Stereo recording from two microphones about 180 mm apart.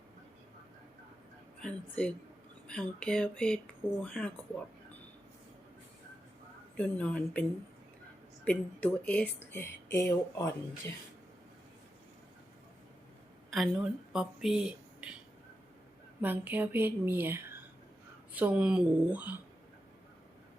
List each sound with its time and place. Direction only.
1.6 s speech: 5° left (ahead or behind)
6.7 s speech: 5° left (ahead or behind)
8.4 s speech: 10° left (ahead or behind)
13.5 s speech: centre (ahead or behind)
16.2 s a woman's voice: 10° right (ahead or behind)